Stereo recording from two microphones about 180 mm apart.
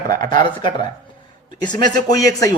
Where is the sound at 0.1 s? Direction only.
25° left (ahead or behind).